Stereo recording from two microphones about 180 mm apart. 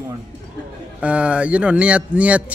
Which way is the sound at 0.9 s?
5° right (ahead or behind).